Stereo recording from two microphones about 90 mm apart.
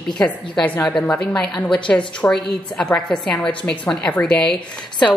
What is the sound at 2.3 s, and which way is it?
A woman's voice, 10° left (ahead or behind).